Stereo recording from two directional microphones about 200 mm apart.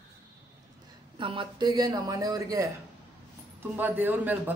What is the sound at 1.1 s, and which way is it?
A man's voice, 25° right (ahead or behind).